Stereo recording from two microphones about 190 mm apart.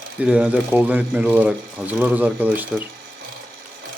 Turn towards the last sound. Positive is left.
turn(degrees=-10)  # may be behind; listen again after turning